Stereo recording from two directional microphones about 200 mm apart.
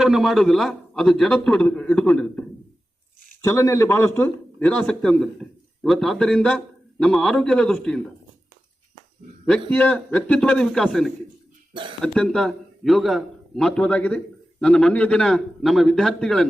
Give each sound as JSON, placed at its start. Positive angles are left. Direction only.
{"t": 0.0, "sound": "a man's voice", "side_deg": 0}
{"t": 3.4, "sound": "a man's voice", "side_deg": 15}
{"t": 9.5, "sound": "a man's voice", "side_deg": 5}
{"t": 11.7, "sound": "speech", "side_deg": -25}
{"t": 12.0, "sound": "a man's voice", "side_deg": 5}